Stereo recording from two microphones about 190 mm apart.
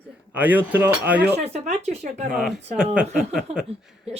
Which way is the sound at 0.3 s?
10° right (ahead or behind).